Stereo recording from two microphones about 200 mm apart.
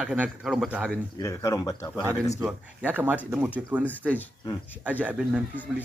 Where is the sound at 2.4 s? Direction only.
5° right (ahead or behind).